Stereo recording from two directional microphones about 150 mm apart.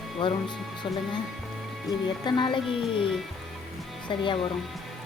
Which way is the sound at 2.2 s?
30° left (ahead or behind).